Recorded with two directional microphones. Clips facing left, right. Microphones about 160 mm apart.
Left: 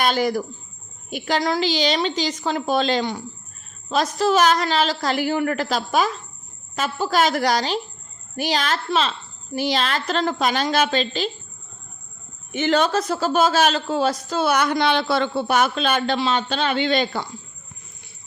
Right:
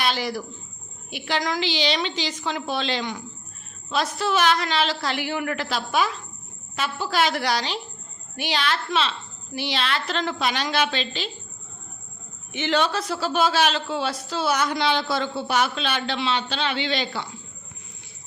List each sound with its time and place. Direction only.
0.0 s a woman's voice: 45° left (ahead or behind)
12.5 s a man's voice: 45° left (ahead or behind)